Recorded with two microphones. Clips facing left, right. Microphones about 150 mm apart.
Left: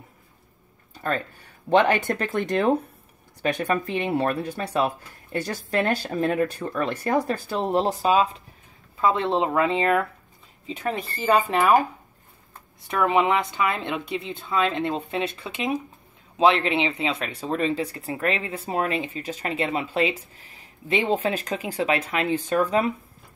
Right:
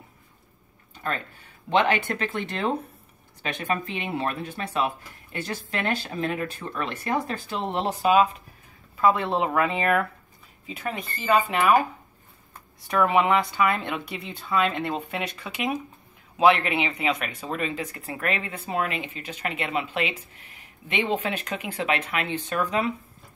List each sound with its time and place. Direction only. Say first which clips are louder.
1.7 s speech: left 3 dB; 45° left (ahead or behind)
12.8 s speech: even; 20° left (ahead or behind); by 22.9 s 35° left (ahead or behind)